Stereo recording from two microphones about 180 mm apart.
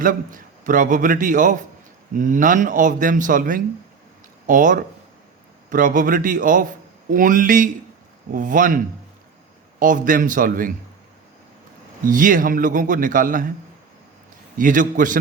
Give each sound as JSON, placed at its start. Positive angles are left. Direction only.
{"t": 0.0, "sound": "a man's voice", "side_deg": -50}
{"t": 9.8, "sound": "a man's voice", "side_deg": -50}
{"t": 12.0, "sound": "a man's voice", "side_deg": -50}
{"t": 14.6, "sound": "a man's voice", "side_deg": -45}